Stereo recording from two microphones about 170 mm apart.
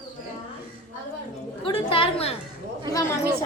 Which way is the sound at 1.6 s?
30° left (ahead or behind).